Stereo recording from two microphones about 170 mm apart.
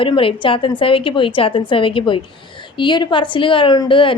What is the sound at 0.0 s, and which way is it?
A woman's voice, 30° left (ahead or behind).